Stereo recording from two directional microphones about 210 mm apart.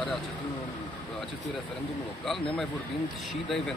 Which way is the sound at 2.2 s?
Centre (ahead or behind).